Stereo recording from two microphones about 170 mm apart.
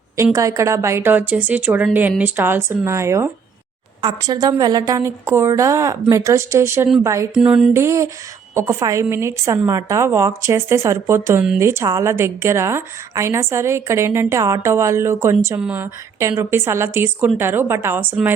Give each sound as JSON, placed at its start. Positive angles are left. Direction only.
{"t": 0.3, "sound": "a woman's voice", "side_deg": -20}
{"t": 7.3, "sound": "a woman's voice", "side_deg": -5}